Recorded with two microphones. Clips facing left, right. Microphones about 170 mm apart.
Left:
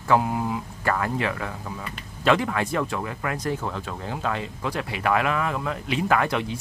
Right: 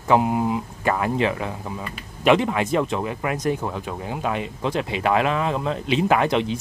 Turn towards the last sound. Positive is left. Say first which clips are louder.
# right 4 dB
turn(degrees=-20)  # may be behind; listen again after turning